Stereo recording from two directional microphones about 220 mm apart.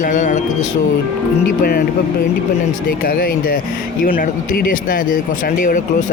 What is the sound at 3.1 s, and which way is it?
Speech, 40° left (ahead or behind).